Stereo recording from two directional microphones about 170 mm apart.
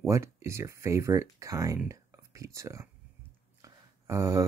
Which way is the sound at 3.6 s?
15° right (ahead or behind).